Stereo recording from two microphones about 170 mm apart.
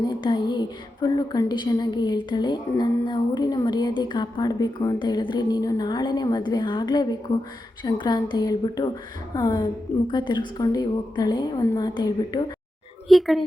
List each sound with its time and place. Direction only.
0.0 s speech: 25° left (ahead or behind)
13.1 s a woman's voice: centre (ahead or behind)